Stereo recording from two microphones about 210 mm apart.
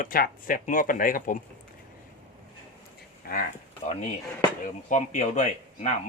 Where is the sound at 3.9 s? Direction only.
35° left (ahead or behind).